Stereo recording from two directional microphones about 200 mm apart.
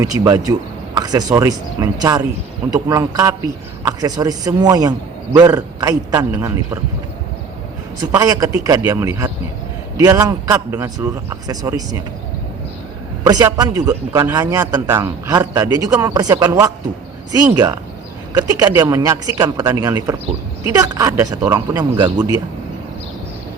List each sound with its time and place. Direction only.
0.0 s a man's voice: 15° right (ahead or behind)
7.9 s a man's voice: 15° right (ahead or behind)
13.2 s a man's voice: 20° right (ahead or behind)